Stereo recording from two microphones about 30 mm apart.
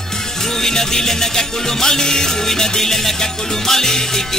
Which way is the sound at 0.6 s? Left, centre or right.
Centre.